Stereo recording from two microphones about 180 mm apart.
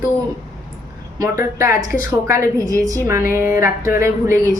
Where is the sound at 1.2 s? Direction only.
15° right (ahead or behind).